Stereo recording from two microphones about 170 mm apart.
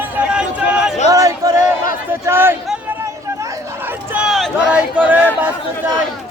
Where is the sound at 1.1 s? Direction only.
20° right (ahead or behind).